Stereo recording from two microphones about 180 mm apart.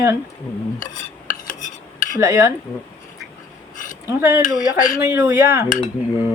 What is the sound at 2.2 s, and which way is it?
Speech, 15° right (ahead or behind).